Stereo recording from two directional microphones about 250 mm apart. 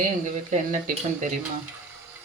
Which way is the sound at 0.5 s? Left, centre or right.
Right.